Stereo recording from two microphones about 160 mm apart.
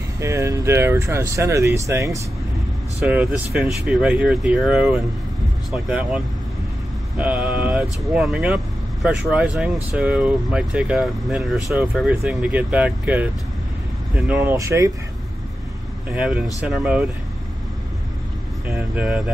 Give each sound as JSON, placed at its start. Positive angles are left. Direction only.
{"t": 0.2, "sound": "speech", "side_deg": -20}
{"t": 16.1, "sound": "speech", "side_deg": -5}
{"t": 18.7, "sound": "speech", "side_deg": -5}